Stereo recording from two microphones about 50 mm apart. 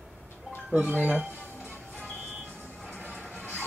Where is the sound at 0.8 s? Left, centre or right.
Right.